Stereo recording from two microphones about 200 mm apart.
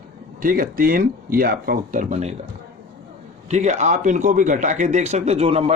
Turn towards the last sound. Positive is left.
turn(degrees=-30)  # may be behind; listen again after turning